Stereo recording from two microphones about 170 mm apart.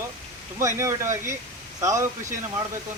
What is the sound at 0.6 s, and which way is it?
A man's voice, 15° right (ahead or behind).